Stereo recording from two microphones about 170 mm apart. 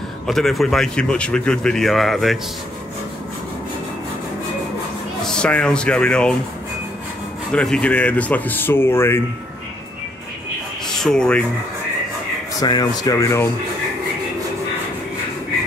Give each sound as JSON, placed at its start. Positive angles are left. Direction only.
{"t": 0.3, "sound": "speech", "side_deg": 0}
{"t": 5.2, "sound": "speech", "side_deg": 5}
{"t": 7.5, "sound": "speech", "side_deg": 5}
{"t": 10.9, "sound": "speech", "side_deg": 5}
{"t": 12.5, "sound": "speech", "side_deg": 25}